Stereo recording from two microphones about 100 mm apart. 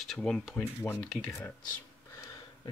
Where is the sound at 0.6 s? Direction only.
20° left (ahead or behind).